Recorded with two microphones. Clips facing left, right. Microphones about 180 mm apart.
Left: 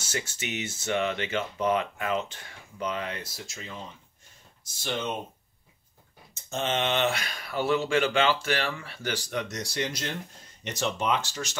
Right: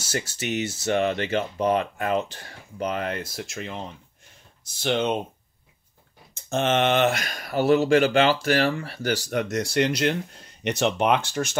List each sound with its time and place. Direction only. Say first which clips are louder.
0.0 s speech: right 5 dB; 35° right (ahead or behind); by 5.1 s 70° right (ahead or behind)
6.5 s speech: right 7 dB; 75° right (ahead or behind)
6.8 s speech: right 6 dB; 50° right (ahead or behind)